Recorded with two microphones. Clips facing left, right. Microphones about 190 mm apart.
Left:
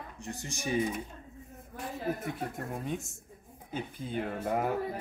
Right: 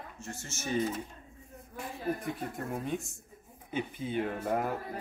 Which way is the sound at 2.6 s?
Centre (ahead or behind).